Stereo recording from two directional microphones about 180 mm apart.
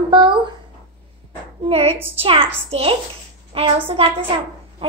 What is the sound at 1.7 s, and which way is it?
A child's voice, 35° right (ahead or behind).